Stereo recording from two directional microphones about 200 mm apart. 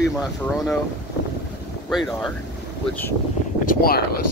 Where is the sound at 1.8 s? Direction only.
5° left (ahead or behind).